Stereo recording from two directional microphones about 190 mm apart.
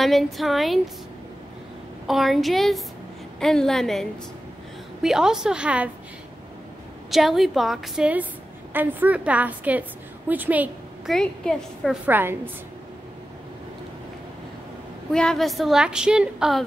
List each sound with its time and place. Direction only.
0.0 s a woman's voice: centre (ahead or behind)
2.0 s a woman's voice: centre (ahead or behind)
7.1 s a woman's voice: centre (ahead or behind)
11.1 s a woman's voice: centre (ahead or behind)
12.1 s a woman's voice: 10° right (ahead or behind)
15.0 s a woman's voice: 5° left (ahead or behind)